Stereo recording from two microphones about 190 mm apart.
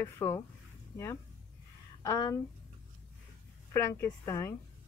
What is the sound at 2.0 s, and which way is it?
Speech, 15° left (ahead or behind).